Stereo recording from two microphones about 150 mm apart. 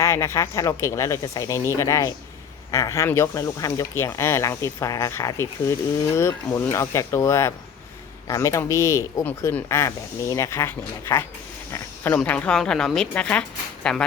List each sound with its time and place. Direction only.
0.0 s speech: 20° left (ahead or behind)